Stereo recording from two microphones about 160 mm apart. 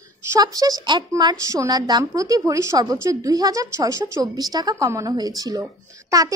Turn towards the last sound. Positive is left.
turn(degrees=-20)  # may be behind; listen again after turning